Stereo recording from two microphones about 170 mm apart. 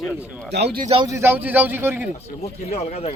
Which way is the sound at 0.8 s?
30° right (ahead or behind).